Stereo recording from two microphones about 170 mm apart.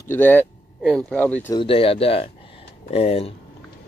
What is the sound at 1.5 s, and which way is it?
Speech, 30° left (ahead or behind).